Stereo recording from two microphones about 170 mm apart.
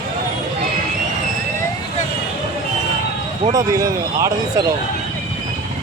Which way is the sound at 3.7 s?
20° right (ahead or behind).